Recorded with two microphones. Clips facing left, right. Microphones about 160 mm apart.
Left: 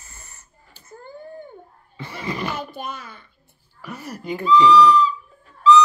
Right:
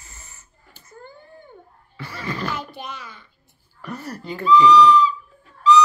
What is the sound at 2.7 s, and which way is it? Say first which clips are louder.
Speech: left 3 dB; 50° left (ahead or behind).